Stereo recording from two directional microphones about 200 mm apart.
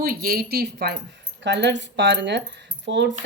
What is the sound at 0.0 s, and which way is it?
Speech, 45° right (ahead or behind).